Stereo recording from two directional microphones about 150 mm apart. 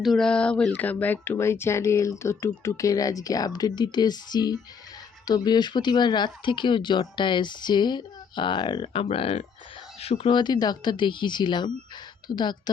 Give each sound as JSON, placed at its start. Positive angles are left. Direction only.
{"t": 0.0, "sound": "speech", "side_deg": 0}